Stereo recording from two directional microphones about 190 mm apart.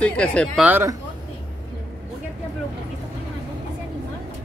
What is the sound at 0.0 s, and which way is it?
Speech, 5° left (ahead or behind).